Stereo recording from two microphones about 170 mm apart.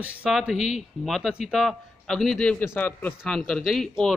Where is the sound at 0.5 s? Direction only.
45° left (ahead or behind).